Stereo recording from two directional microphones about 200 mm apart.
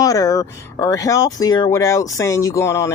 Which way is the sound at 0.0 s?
15° left (ahead or behind).